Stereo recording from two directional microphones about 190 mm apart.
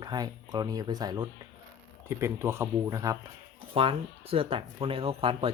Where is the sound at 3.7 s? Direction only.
30° right (ahead or behind).